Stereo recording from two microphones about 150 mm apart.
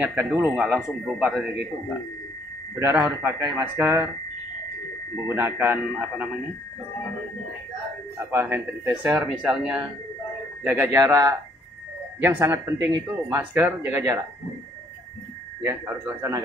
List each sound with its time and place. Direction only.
0.0 s speech: 10° right (ahead or behind)
2.8 s speech: 15° right (ahead or behind)
5.3 s speech: 15° right (ahead or behind)
8.3 s speech: 15° right (ahead or behind)
15.6 s speech: 15° right (ahead or behind)